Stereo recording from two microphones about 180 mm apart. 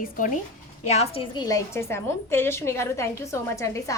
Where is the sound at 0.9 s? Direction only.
35° left (ahead or behind).